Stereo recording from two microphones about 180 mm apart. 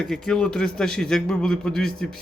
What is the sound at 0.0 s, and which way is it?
A man's voice, 5° left (ahead or behind).